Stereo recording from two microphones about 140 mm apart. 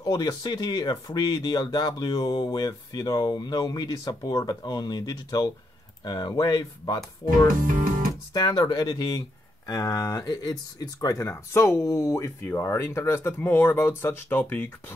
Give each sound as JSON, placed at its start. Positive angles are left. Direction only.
{"t": 0.0, "sound": "speech", "side_deg": 25}
{"t": 7.5, "sound": "speech", "side_deg": -75}
{"t": 8.3, "sound": "speech", "side_deg": 30}